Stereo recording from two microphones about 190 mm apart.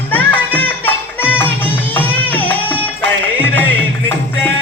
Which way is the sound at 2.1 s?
10° left (ahead or behind).